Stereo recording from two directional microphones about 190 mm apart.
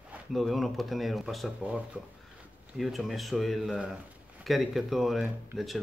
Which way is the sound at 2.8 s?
Centre (ahead or behind).